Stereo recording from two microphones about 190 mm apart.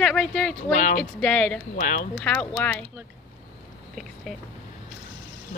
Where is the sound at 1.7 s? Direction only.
45° left (ahead or behind).